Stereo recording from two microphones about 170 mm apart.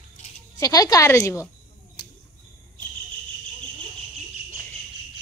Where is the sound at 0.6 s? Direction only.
20° left (ahead or behind).